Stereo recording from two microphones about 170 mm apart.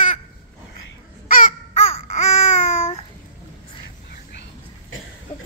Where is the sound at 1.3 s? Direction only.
50° left (ahead or behind).